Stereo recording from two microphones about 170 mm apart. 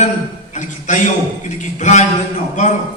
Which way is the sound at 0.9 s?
45° left (ahead or behind).